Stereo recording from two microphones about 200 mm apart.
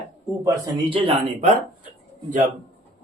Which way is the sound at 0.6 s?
25° right (ahead or behind).